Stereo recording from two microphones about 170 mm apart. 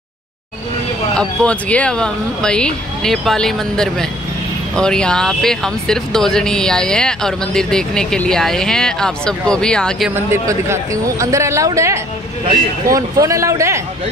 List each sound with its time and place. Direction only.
1.1 s speech: 5° left (ahead or behind)
10.1 s speech: 15° right (ahead or behind)